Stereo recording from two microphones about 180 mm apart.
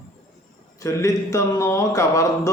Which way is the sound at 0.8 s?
15° left (ahead or behind).